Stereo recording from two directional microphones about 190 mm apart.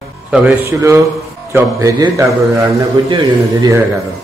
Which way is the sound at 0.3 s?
5° right (ahead or behind).